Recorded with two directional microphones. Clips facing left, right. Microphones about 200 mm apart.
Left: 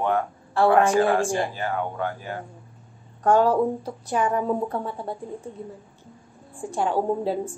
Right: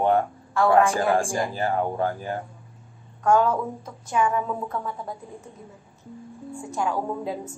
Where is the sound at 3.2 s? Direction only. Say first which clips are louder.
Left 2 dB; 35° left (ahead or behind).